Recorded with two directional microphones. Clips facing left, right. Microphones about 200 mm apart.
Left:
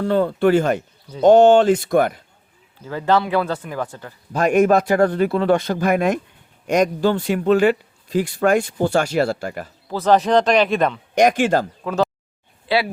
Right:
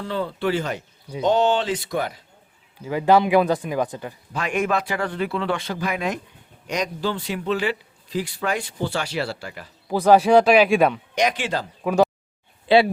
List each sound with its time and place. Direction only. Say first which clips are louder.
0.0 s a man's voice: left 8 dB; 50° left (ahead or behind)
2.8 s speech: right 2 dB; 15° right (ahead or behind)
4.3 s a man's voice: left 9 dB; 45° left (ahead or behind)
9.9 s speech: right 1 dB; 10° right (ahead or behind)
11.1 s a man's voice: left 7 dB; 50° left (ahead or behind)
11.8 s speech: right 2 dB; 15° right (ahead or behind)
12.6 s speech: right 4 dB; 25° right (ahead or behind)